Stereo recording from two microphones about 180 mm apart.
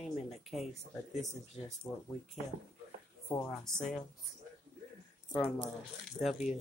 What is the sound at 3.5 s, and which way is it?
Speech, centre (ahead or behind).